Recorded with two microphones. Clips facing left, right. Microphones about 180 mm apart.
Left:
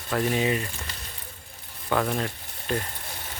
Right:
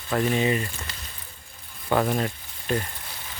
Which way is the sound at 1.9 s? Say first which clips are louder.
Right 2 dB; 10° right (ahead or behind).